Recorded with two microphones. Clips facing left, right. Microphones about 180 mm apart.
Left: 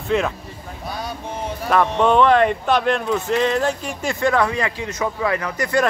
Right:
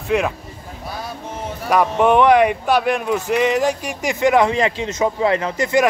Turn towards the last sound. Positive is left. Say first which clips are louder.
# right 3 dB
turn(degrees=-25)  # may be behind; listen again after turning